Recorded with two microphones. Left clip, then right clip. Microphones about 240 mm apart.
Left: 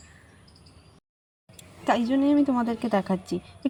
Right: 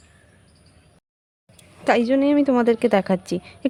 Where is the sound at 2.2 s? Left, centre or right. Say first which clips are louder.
Right 5 dB; right.